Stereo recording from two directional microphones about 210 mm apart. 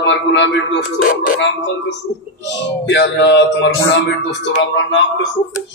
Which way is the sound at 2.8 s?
55° left (ahead or behind).